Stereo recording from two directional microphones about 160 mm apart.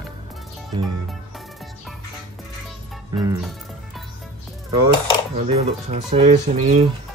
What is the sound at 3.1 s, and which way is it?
Speech, 25° right (ahead or behind).